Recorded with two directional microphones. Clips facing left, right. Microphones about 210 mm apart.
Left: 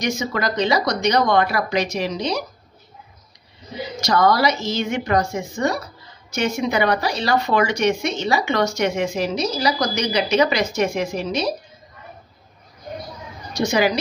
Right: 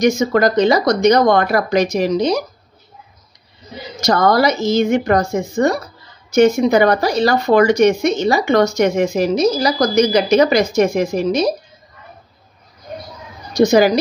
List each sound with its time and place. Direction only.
0.0 s speech: 45° right (ahead or behind)
4.0 s speech: 50° right (ahead or behind)
13.6 s a woman's voice: 40° right (ahead or behind)